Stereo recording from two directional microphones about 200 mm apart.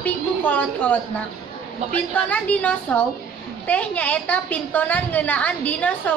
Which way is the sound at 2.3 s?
5° left (ahead or behind).